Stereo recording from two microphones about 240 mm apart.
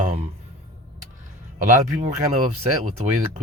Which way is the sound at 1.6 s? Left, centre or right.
Right.